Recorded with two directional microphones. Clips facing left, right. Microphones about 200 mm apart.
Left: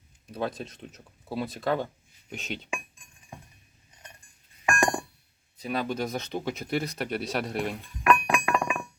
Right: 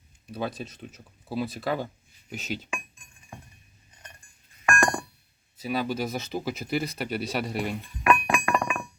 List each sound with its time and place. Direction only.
0.3 s speech: centre (ahead or behind)
4.6 s a sound: 20° left (ahead or behind)
5.5 s speech: 5° right (ahead or behind)
8.4 s music: 5° left (ahead or behind)